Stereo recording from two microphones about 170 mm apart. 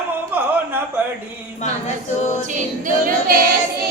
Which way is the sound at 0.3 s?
10° right (ahead or behind).